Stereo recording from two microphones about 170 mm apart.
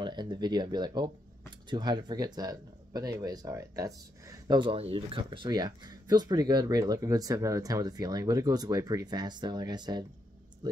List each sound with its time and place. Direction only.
0.0 s speech: 25° right (ahead or behind)